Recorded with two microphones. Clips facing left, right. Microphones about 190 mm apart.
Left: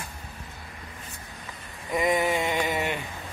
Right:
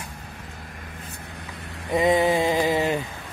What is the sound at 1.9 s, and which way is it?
Mantra, 30° right (ahead or behind).